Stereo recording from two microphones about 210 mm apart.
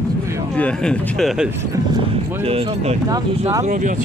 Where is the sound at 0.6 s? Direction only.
5° left (ahead or behind).